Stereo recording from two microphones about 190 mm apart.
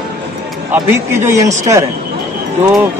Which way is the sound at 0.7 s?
15° right (ahead or behind).